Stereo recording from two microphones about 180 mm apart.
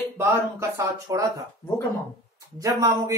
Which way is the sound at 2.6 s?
20° right (ahead or behind).